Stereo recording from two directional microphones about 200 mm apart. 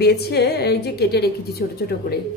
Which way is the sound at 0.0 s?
55° left (ahead or behind).